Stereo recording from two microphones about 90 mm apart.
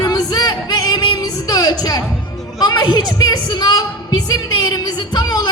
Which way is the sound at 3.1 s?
50° left (ahead or behind).